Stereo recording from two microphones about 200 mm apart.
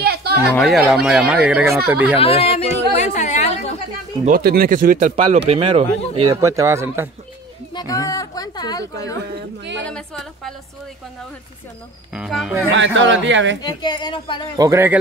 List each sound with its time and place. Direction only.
0.0 s a sound: 55° right (ahead or behind)
0.5 s speech: centre (ahead or behind)
2.1 s speech: 30° left (ahead or behind)
3.0 s a sound: 35° left (ahead or behind)
4.2 s speech: 50° right (ahead or behind); by 6.4 s 30° right (ahead or behind)
6.4 s speech: 15° right (ahead or behind)
7.7 s speech: 15° left (ahead or behind)
9.8 s speech: 5° left (ahead or behind)
12.1 s speech: centre (ahead or behind)
12.7 s speech: 65° right (ahead or behind)
13.6 s speech: 20° left (ahead or behind)
14.6 s speech: 10° right (ahead or behind)